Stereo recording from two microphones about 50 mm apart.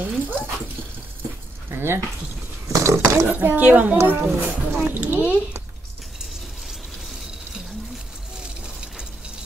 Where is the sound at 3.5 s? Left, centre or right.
Right.